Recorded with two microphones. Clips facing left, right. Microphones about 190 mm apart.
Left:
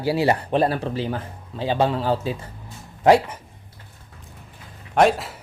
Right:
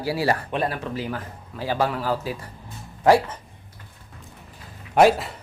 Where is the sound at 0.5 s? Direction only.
35° left (ahead or behind).